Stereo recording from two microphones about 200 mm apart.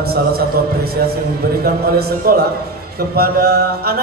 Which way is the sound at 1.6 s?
45° right (ahead or behind).